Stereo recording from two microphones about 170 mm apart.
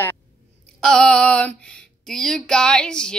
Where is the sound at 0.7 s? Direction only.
5° left (ahead or behind).